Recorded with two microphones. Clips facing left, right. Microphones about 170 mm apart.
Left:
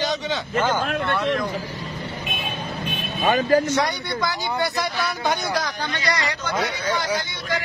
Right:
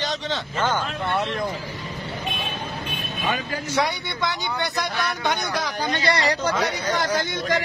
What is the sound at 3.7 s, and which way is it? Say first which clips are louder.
Speech: left 1 dB; centre (ahead or behind).